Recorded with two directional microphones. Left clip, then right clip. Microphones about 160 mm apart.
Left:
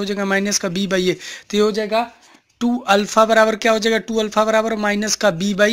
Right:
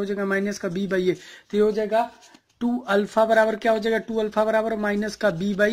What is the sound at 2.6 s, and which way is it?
A man's voice, 35° left (ahead or behind).